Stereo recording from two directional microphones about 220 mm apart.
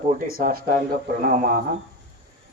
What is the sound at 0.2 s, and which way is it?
Speech, 40° right (ahead or behind).